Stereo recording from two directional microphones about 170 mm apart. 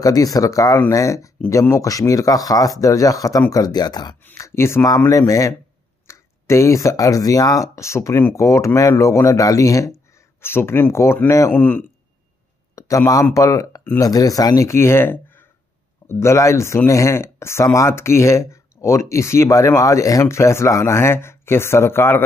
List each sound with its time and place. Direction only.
0.0 s speech: 20° left (ahead or behind)
4.2 s speech: 15° left (ahead or behind)